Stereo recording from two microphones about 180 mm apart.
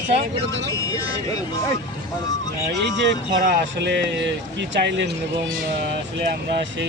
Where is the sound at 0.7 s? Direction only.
20° left (ahead or behind).